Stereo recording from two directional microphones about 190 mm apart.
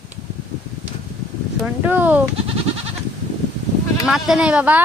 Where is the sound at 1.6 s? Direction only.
10° right (ahead or behind).